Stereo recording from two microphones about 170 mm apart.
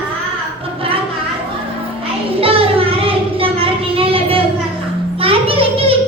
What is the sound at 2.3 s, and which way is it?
Child singing, 35° right (ahead or behind).